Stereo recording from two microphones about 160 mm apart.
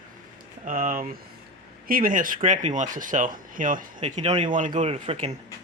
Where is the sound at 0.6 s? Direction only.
55° right (ahead or behind).